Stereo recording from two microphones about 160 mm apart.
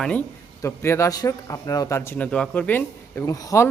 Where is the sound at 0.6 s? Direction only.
15° left (ahead or behind).